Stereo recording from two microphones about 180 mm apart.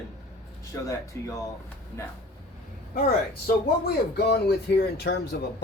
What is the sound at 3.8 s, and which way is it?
Speech, 60° left (ahead or behind).